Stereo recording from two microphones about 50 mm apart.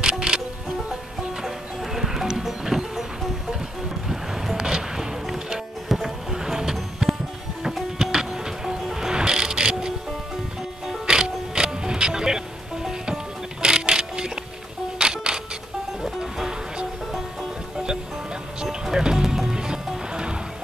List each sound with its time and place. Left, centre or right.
0.0 s music: centre
1.4 s music: centre
18.6 s music: centre